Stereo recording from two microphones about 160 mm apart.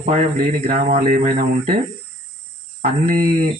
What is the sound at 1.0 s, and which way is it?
Speech, 55° right (ahead or behind).